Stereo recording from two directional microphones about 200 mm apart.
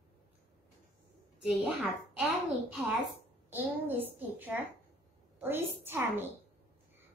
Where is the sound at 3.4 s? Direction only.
10° right (ahead or behind).